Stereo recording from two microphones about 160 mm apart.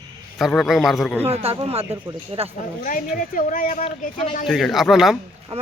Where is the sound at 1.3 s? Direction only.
40° right (ahead or behind).